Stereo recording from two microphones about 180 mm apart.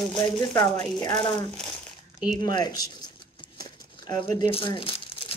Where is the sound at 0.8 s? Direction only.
20° left (ahead or behind).